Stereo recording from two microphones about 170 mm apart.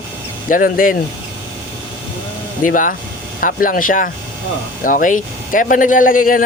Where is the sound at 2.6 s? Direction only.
50° left (ahead or behind).